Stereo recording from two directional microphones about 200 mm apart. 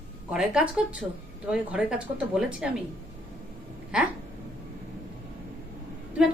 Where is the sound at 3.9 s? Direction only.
5° right (ahead or behind).